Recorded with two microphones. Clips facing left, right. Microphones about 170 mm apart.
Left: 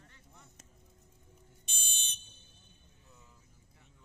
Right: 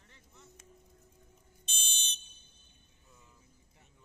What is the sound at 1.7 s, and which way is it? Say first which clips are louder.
Fire alarm: right 4 dB; 20° right (ahead or behind).